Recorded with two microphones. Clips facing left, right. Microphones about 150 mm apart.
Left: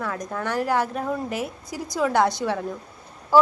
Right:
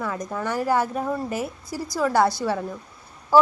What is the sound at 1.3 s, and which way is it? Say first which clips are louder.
Speech: right 1 dB; 15° left (ahead or behind).